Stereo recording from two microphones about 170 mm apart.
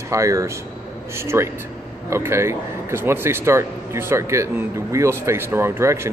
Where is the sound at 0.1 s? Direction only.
20° right (ahead or behind).